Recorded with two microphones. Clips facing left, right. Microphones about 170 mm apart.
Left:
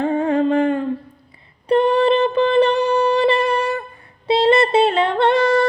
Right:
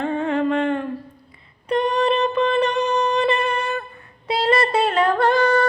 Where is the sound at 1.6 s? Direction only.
30° left (ahead or behind).